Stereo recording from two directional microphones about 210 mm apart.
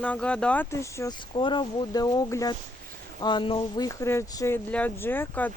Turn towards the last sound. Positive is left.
turn(degrees=10)  # may be behind; listen again after turning